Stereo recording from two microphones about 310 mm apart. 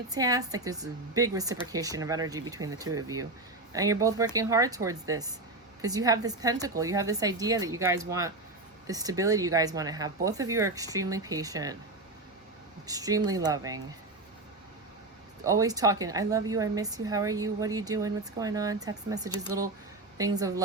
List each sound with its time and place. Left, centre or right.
0.1 s a woman's voice: centre
12.9 s a woman's voice: centre
15.4 s a woman's voice: centre